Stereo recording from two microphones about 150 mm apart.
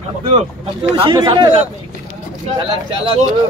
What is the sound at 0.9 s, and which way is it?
Speech, 35° right (ahead or behind).